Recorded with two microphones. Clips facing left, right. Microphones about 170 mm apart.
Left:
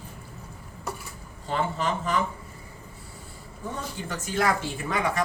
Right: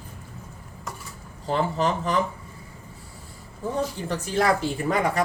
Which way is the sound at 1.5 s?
35° right (ahead or behind).